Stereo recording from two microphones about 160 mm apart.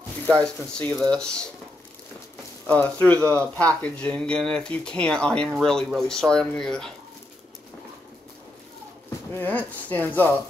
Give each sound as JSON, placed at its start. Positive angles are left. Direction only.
{"t": 0.3, "sound": "speech", "side_deg": 5}
{"t": 2.6, "sound": "speech", "side_deg": 10}
{"t": 9.3, "sound": "speech", "side_deg": 10}